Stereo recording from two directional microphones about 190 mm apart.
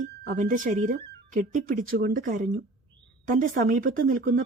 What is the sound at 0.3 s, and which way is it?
Speech, 45° right (ahead or behind).